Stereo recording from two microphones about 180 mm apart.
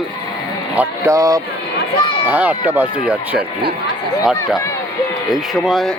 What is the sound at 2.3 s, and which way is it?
Speech, 10° right (ahead or behind).